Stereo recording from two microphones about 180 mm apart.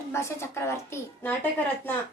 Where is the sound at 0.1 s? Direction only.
15° left (ahead or behind).